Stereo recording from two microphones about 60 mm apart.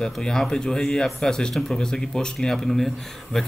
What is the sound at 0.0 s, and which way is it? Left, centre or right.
Speech, centre.